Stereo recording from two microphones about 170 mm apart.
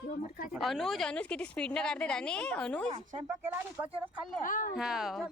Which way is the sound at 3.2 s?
10° right (ahead or behind).